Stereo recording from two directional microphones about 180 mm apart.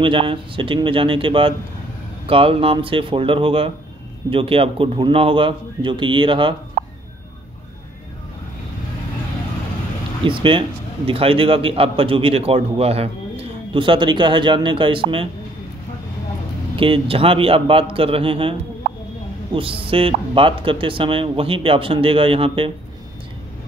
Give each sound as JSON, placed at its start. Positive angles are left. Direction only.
{"t": 0.0, "sound": "speech", "side_deg": -30}
{"t": 10.2, "sound": "speech", "side_deg": -30}
{"t": 16.7, "sound": "speech", "side_deg": -30}